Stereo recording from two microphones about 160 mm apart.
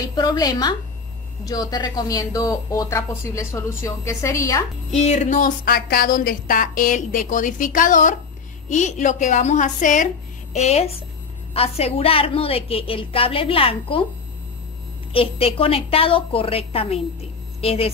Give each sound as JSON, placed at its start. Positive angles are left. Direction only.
{"t": 0.0, "sound": "a woman's voice", "side_deg": 25}
{"t": 4.9, "sound": "a woman's voice", "side_deg": 45}
{"t": 10.5, "sound": "a woman's voice", "side_deg": 40}
{"t": 15.1, "sound": "a woman's voice", "side_deg": 35}